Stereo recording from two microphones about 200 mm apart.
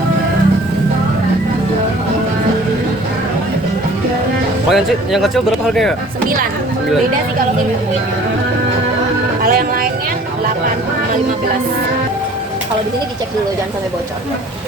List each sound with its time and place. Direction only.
4.7 s speech: centre (ahead or behind)
9.4 s music: 45° right (ahead or behind)